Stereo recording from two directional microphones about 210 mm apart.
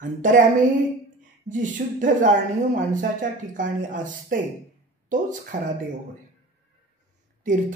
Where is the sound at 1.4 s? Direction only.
40° right (ahead or behind).